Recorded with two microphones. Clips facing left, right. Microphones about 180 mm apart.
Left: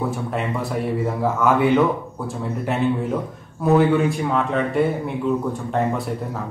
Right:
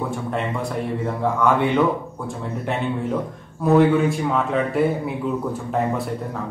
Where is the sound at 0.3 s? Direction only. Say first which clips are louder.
Even; 5° left (ahead or behind).